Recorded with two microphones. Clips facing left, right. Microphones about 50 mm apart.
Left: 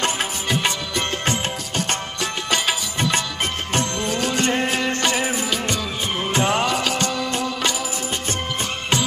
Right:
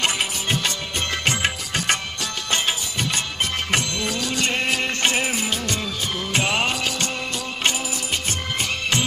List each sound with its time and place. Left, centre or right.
0.9 s music: left
2.5 s music: left
5.0 s music: right
6.3 s music: left